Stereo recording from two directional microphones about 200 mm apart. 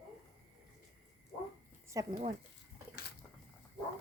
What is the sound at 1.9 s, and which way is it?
Speech, 15° right (ahead or behind).